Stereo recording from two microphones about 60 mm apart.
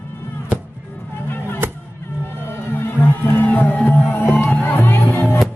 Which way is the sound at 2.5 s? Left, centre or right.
Left.